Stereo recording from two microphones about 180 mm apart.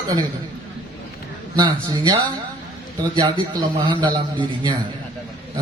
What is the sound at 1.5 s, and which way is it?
Speech, 20° right (ahead or behind).